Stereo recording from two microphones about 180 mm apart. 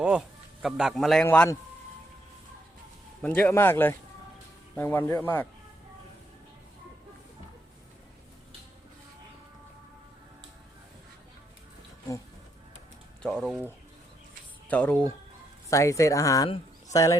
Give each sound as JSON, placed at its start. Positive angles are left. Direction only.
{"t": 0.0, "sound": "a man's voice", "side_deg": -5}
{"t": 3.2, "sound": "speech", "side_deg": 10}
{"t": 13.2, "sound": "speech", "side_deg": 5}
{"t": 14.7, "sound": "speech", "side_deg": 5}